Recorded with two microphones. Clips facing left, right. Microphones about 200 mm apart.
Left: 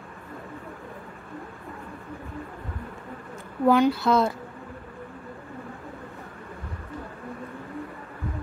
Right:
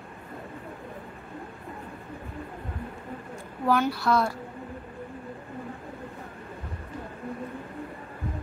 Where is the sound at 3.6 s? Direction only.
20° left (ahead or behind).